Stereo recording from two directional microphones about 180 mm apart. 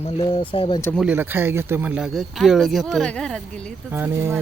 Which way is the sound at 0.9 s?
10° right (ahead or behind).